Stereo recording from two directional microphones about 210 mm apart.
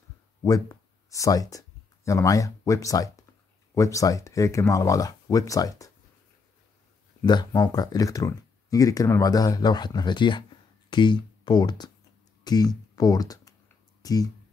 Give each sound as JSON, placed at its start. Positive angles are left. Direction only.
{"t": 0.4, "sound": "speech", "side_deg": 15}
{"t": 7.2, "sound": "speech", "side_deg": 20}